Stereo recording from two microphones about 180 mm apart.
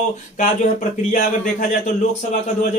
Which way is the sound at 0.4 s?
45° left (ahead or behind).